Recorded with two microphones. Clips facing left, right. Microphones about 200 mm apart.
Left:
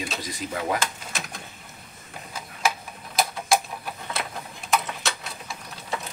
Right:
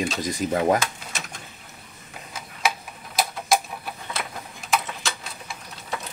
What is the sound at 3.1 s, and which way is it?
Typewriter, centre (ahead or behind).